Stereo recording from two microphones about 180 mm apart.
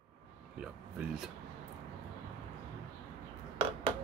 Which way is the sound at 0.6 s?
5° right (ahead or behind).